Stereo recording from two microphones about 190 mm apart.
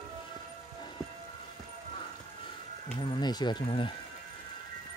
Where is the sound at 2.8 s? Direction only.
25° left (ahead or behind).